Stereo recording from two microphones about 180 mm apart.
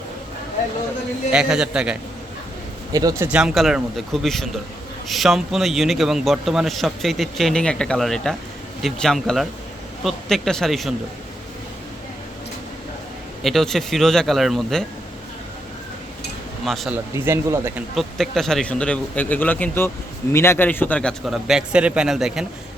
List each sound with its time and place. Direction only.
1.3 s a man's voice: 5° right (ahead or behind)
2.9 s speech: 20° right (ahead or behind)
3.2 s a man's voice: 5° right (ahead or behind)
13.4 s a man's voice: centre (ahead or behind)
16.6 s a man's voice: centre (ahead or behind)
17.2 s speech: 15° right (ahead or behind)
17.9 s a man's voice: centre (ahead or behind)